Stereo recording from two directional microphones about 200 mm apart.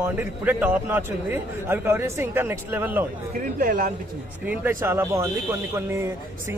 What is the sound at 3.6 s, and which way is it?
Speech, 45° right (ahead or behind).